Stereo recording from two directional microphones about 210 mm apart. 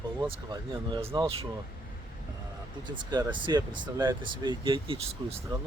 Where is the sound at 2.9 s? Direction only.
20° right (ahead or behind).